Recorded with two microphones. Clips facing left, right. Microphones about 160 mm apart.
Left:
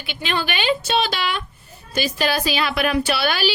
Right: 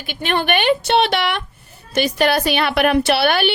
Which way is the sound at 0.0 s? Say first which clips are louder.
Right 4 dB; 50° right (ahead or behind).